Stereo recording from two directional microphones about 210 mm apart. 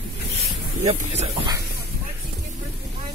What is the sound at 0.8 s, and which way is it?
Speech, 30° right (ahead or behind).